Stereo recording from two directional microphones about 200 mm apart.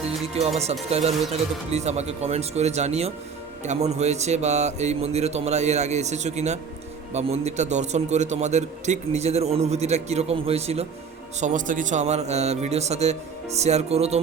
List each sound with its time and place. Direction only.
0.0 s a man's voice: 30° right (ahead or behind)